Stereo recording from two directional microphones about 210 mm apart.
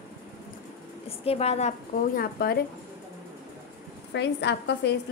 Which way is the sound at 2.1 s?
45° left (ahead or behind).